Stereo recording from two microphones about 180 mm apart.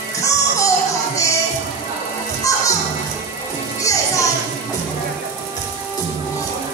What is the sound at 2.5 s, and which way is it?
Music, 20° left (ahead or behind).